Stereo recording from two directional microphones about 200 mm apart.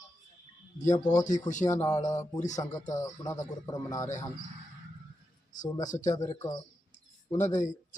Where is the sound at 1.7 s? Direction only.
15° left (ahead or behind).